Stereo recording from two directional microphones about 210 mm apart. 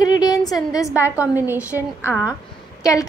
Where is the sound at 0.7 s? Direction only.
15° left (ahead or behind).